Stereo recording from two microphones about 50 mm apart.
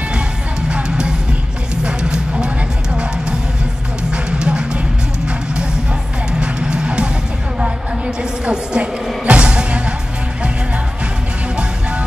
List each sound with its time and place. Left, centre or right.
0.7 s music: centre
6.4 s music: centre
8.2 s music: right